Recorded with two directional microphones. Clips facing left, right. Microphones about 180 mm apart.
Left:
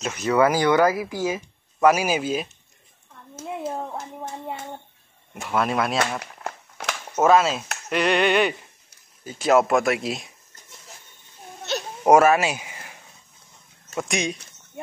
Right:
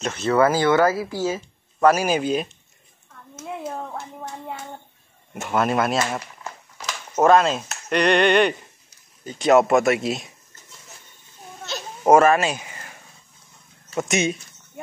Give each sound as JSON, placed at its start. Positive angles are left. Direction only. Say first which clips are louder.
{"t": 0.0, "sound": "speech", "louder": "right 1 dB", "side_deg": 10}
{"t": 3.5, "sound": "a sound", "louder": "left 1 dB", "side_deg": 10}
{"t": 5.3, "sound": "speech", "louder": "right 2 dB", "side_deg": 0}
{"t": 6.4, "sound": "crumpling", "louder": "left 3 dB", "side_deg": 60}
{"t": 7.2, "sound": "speech", "louder": "right 2 dB", "side_deg": 5}
{"t": 12.1, "sound": "speech", "louder": "right 1 dB", "side_deg": 10}
{"t": 13.9, "sound": "speech", "louder": "right 4 dB", "side_deg": 0}